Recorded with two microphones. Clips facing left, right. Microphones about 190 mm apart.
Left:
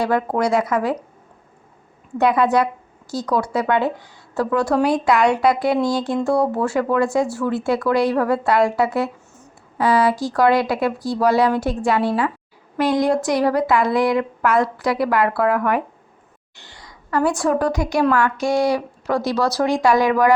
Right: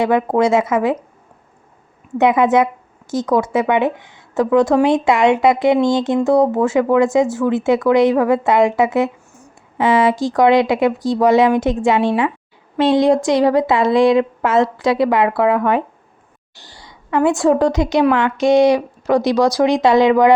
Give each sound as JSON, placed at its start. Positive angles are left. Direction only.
{"t": 0.0, "sound": "speech", "side_deg": -20}
{"t": 2.1, "sound": "speech", "side_deg": -20}
{"t": 9.3, "sound": "a sound", "side_deg": -10}
{"t": 9.8, "sound": "speech", "side_deg": -20}
{"t": 16.6, "sound": "a woman's voice", "side_deg": -35}